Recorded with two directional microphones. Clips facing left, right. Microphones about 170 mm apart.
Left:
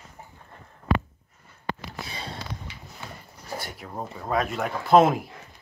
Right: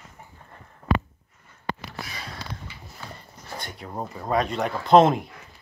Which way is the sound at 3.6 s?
5° left (ahead or behind).